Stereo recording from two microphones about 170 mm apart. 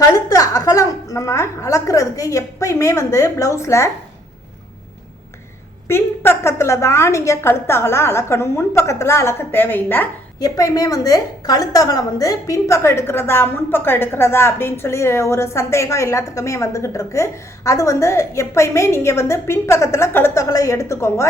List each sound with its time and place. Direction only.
0.3 s a woman's voice: 20° left (ahead or behind)
5.9 s a woman's voice: 15° left (ahead or behind)